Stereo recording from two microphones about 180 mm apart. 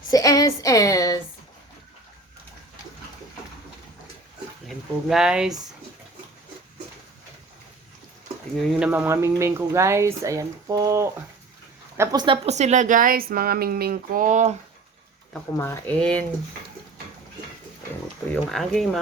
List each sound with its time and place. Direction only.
0.1 s a woman's voice: 20° left (ahead or behind)
4.6 s speech: centre (ahead or behind)
8.8 s a woman's voice: 10° right (ahead or behind); by 14.5 s 45° right (ahead or behind)
15.5 s speech: 15° left (ahead or behind)
16.0 s speech: 5° left (ahead or behind)
18.3 s speech: centre (ahead or behind)